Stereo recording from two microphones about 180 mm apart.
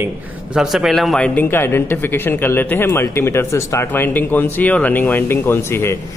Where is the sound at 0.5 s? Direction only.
Centre (ahead or behind).